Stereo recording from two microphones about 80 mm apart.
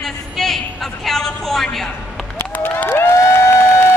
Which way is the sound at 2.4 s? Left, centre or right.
Left.